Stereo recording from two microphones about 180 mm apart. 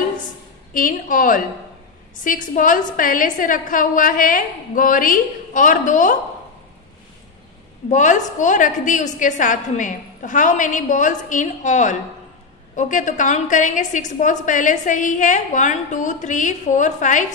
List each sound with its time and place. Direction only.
0.7 s a woman's voice: 50° left (ahead or behind)
7.9 s a woman's voice: 45° left (ahead or behind)